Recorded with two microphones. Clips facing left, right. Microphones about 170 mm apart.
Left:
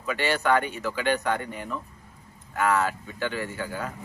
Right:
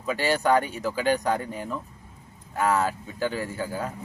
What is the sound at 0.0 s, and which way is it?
Speech, 35° right (ahead or behind).